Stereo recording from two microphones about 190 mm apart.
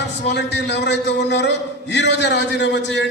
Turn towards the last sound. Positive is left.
turn(degrees=65)  # may be behind; listen again after turning